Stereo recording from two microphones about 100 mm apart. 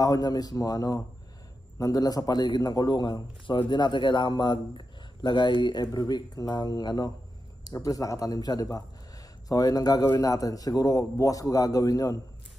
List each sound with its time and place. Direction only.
0.0 s a man's voice: 40° left (ahead or behind)